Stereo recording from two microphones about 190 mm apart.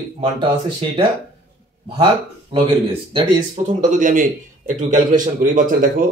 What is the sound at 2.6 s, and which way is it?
A man's voice, 25° right (ahead or behind).